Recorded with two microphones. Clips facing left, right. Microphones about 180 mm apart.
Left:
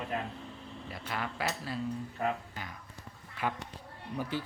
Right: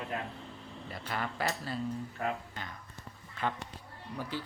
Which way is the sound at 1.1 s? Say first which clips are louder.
Right 1 dB; centre (ahead or behind).